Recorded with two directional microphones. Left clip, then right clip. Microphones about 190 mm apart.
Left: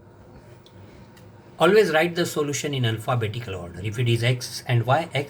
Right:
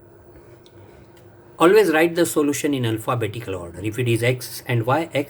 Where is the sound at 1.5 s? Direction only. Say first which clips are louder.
Right 3 dB; 55° right (ahead or behind).